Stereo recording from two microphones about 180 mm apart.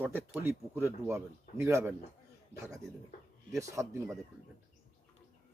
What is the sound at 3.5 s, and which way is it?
Speech, 15° right (ahead or behind).